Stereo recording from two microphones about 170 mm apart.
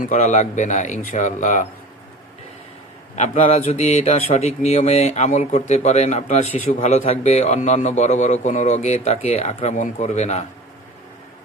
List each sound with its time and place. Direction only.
0.0 s speech: 45° left (ahead or behind)
3.2 s speech: 40° left (ahead or behind)